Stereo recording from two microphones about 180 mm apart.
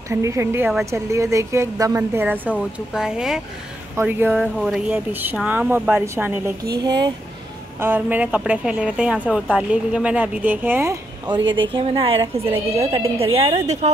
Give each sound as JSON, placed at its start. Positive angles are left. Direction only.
{"t": 0.1, "sound": "a woman's voice", "side_deg": -15}
{"t": 6.7, "sound": "a woman's voice", "side_deg": -20}
{"t": 7.8, "sound": "a woman's voice", "side_deg": -10}
{"t": 11.4, "sound": "speech", "side_deg": -90}
{"t": 11.7, "sound": "a woman's voice", "side_deg": -30}